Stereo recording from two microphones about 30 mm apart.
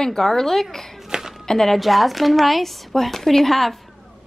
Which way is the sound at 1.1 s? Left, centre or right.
Centre.